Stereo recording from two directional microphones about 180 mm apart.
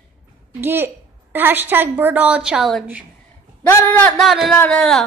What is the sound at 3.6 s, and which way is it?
Speech, 10° left (ahead or behind).